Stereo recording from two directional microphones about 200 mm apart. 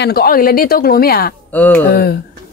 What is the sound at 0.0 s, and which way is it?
A woman's voice, 50° left (ahead or behind).